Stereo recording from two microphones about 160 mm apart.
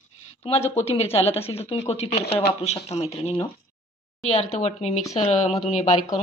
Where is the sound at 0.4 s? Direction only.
40° left (ahead or behind).